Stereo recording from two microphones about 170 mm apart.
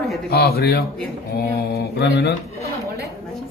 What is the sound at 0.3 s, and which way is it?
Mantra, 70° left (ahead or behind).